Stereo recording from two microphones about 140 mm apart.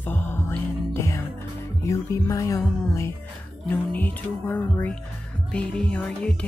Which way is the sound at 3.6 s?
15° left (ahead or behind).